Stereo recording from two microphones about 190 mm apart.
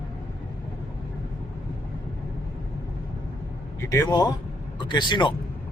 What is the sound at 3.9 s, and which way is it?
A man's voice, 20° left (ahead or behind).